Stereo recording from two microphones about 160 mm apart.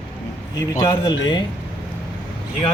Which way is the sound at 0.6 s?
25° left (ahead or behind).